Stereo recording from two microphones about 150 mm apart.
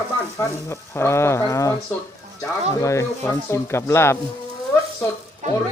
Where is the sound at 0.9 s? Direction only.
15° left (ahead or behind).